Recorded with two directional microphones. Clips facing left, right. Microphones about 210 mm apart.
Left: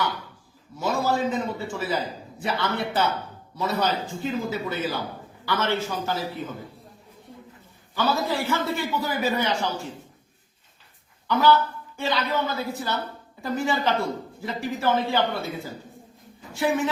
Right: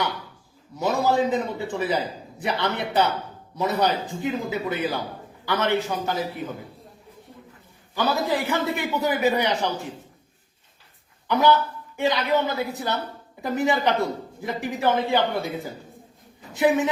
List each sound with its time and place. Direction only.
0.8 s a man's voice: 20° right (ahead or behind)
7.9 s a man's voice: 15° right (ahead or behind)
11.3 s a man's voice: 20° right (ahead or behind)